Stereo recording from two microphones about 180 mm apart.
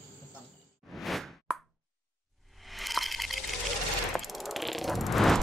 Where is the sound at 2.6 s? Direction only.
Centre (ahead or behind).